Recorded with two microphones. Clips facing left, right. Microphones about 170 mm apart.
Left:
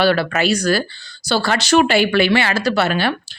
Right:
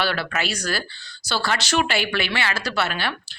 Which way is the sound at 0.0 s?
45° left (ahead or behind).